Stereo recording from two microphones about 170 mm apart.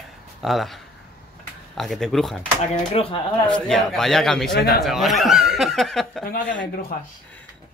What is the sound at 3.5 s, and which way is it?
Speech, centre (ahead or behind).